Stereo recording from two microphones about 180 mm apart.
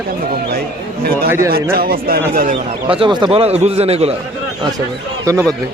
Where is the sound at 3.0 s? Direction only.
25° right (ahead or behind).